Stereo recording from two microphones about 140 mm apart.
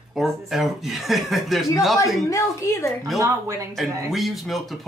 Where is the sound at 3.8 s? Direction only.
Centre (ahead or behind).